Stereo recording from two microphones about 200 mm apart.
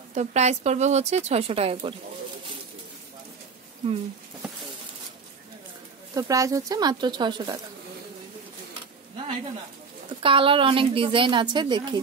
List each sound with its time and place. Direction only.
0.1 s speech: 35° right (ahead or behind)
6.1 s a woman's voice: 15° right (ahead or behind)
10.2 s a woman's voice: 25° right (ahead or behind)